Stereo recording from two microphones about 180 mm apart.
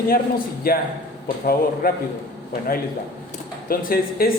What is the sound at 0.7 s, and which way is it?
Speech, 55° left (ahead or behind).